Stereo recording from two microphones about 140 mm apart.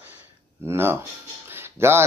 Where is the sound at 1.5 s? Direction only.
15° right (ahead or behind).